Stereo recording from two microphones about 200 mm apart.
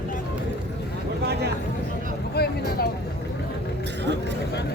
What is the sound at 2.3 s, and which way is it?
Vehicle, 50° left (ahead or behind).